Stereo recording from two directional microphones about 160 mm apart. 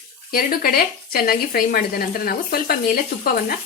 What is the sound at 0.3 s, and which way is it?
Speech, 65° left (ahead or behind).